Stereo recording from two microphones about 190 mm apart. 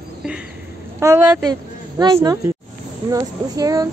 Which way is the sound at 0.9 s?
15° right (ahead or behind).